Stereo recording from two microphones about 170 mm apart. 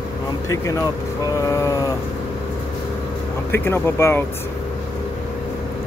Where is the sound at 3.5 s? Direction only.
15° left (ahead or behind).